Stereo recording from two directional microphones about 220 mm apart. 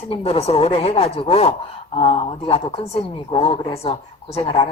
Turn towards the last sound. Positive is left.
turn(degrees=25)  # may be behind; listen again after turning